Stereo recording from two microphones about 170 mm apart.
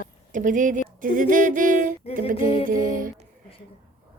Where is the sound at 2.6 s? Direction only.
55° right (ahead or behind).